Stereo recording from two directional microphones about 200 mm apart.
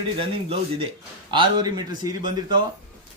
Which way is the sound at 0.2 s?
25° right (ahead or behind).